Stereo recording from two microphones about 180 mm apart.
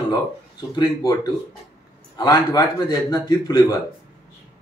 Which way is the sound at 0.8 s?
25° left (ahead or behind).